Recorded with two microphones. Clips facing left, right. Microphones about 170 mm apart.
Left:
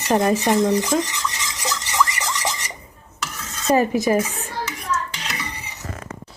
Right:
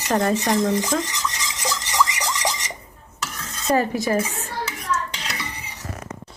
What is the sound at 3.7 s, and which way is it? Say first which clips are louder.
Dishes: left 3 dB; 20° left (ahead or behind).